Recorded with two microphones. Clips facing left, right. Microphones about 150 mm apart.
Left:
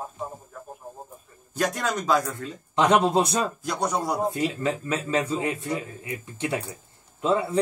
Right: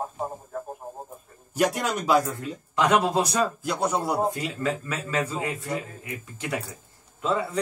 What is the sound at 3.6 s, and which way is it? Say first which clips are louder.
Speech: right 1 dB; 5° right (ahead or behind).